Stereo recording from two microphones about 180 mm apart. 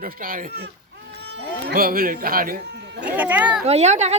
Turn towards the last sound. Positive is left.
turn(degrees=-40)  # may be behind; listen again after turning